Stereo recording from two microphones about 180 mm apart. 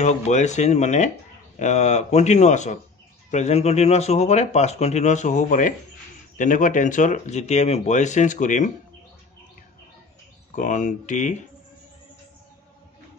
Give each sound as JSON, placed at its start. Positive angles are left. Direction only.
{"t": 0.0, "sound": "speech", "side_deg": 40}
{"t": 10.5, "sound": "speech", "side_deg": 45}